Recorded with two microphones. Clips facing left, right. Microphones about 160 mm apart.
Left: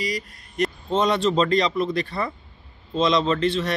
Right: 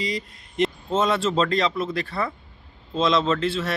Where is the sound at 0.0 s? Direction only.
25° right (ahead or behind).